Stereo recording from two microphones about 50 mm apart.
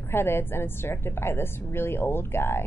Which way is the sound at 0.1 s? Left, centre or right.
Left.